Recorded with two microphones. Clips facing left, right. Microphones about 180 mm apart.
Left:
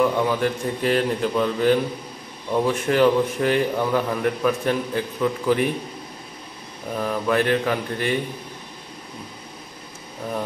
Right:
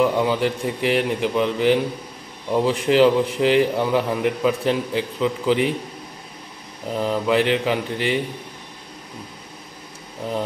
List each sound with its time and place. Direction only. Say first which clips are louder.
0.0 s a man's voice: right 1 dB; 15° right (ahead or behind)
6.9 s speech: right 2 dB; 20° right (ahead or behind)